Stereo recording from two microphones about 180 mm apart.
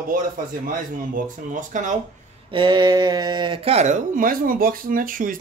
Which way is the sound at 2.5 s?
25° right (ahead or behind).